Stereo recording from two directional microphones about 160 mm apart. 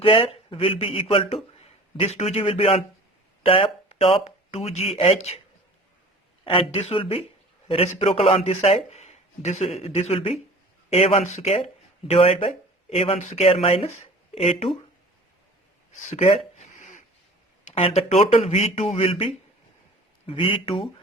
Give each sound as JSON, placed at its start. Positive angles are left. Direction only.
{"t": 0.0, "sound": "a man's voice", "side_deg": 35}
{"t": 6.4, "sound": "speech", "side_deg": 35}
{"t": 16.0, "sound": "speech", "side_deg": 45}
{"t": 16.6, "sound": "a sound", "side_deg": 50}
{"t": 17.7, "sound": "speech", "side_deg": 40}